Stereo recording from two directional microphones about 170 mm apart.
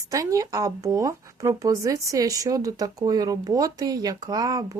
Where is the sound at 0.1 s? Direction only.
20° right (ahead or behind).